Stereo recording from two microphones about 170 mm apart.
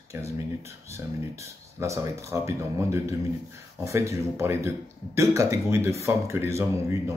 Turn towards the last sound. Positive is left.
turn(degrees=-15)  # may be behind; listen again after turning